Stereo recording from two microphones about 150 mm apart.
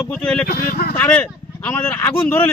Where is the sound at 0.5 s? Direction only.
90° left.